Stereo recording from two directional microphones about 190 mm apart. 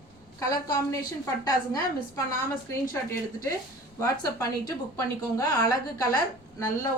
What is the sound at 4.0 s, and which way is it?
A woman's voice, 15° left (ahead or behind).